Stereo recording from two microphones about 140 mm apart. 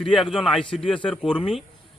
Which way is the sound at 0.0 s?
Centre (ahead or behind).